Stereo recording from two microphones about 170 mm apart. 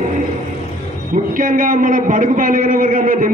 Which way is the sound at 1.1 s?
55° right (ahead or behind).